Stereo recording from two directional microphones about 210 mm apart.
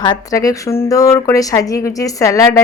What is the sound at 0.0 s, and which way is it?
Speech, 20° left (ahead or behind).